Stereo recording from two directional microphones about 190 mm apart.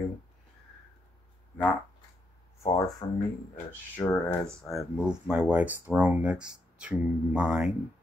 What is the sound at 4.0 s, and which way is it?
Speech, 15° left (ahead or behind).